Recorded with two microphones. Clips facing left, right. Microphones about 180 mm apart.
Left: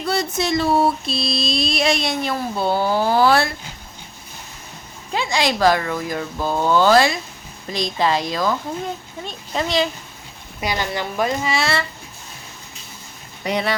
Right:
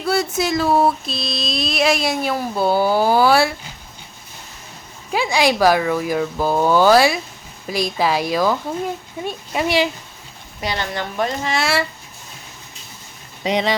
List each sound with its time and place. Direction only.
0.0 s speech: 5° right (ahead or behind)
5.1 s speech: 10° right (ahead or behind)
10.6 s a woman's voice: 10° left (ahead or behind)
13.4 s speech: 15° right (ahead or behind)